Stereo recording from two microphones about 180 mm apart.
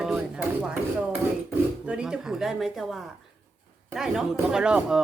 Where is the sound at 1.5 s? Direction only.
5° right (ahead or behind).